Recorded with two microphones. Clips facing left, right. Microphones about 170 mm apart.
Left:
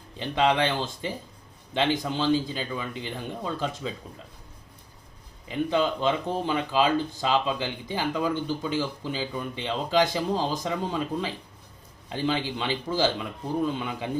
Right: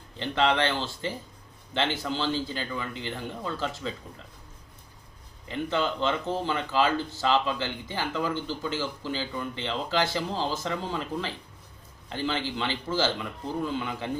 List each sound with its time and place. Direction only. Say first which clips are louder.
0.2 s speech: left 1 dB; 15° left (ahead or behind)
5.5 s speech: left 3 dB; 15° left (ahead or behind)